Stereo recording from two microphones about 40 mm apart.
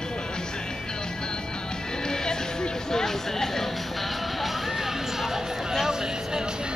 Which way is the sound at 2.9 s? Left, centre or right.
Centre.